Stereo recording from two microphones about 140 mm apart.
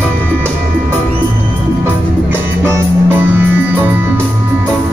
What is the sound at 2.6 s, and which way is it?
Music, 15° right (ahead or behind).